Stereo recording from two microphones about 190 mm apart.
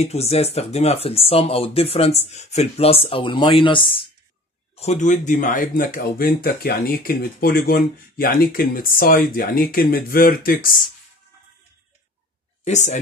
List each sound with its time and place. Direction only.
0.0 s speech: 35° left (ahead or behind)
4.7 s speech: 40° left (ahead or behind)
12.6 s speech: 40° left (ahead or behind)